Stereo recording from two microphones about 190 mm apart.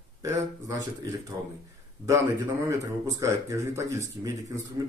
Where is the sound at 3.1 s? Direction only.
15° right (ahead or behind).